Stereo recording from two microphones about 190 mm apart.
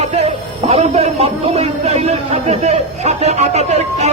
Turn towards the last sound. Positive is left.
turn(degrees=-35)  # may be behind; listen again after turning